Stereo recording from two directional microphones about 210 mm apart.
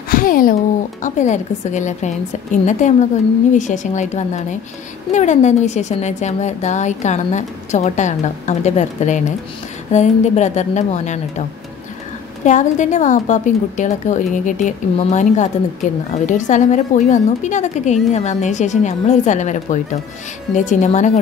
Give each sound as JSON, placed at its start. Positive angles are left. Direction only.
{"t": 0.1, "sound": "a woman's voice", "side_deg": 40}
{"t": 12.4, "sound": "a woman's voice", "side_deg": 35}